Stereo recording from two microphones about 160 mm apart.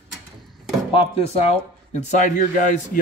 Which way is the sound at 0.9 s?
35° left (ahead or behind).